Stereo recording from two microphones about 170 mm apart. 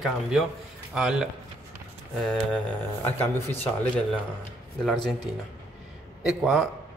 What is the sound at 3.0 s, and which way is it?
Speech, 15° left (ahead or behind).